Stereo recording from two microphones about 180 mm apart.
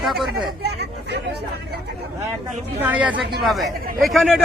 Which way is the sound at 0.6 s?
65° right (ahead or behind).